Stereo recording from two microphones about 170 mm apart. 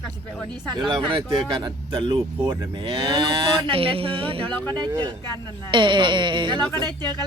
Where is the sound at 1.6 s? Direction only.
25° right (ahead or behind).